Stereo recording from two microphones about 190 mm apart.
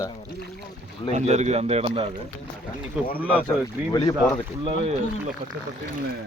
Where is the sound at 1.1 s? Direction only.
35° right (ahead or behind).